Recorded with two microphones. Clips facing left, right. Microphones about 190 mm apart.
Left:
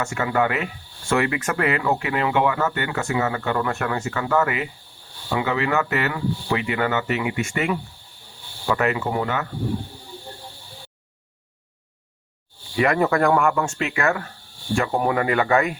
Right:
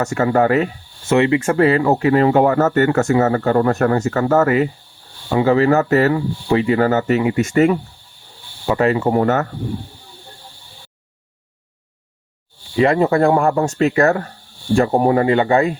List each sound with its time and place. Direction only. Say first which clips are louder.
0.0 s speech: right 6 dB; 40° right (ahead or behind)
1.0 s speech: right 7 dB; 25° right (ahead or behind); by 7.8 s 40° right (ahead or behind)
8.6 s speech: right 6 dB; 30° right (ahead or behind); by 9.5 s 45° right (ahead or behind)
12.7 s speech: right 5 dB; 25° right (ahead or behind)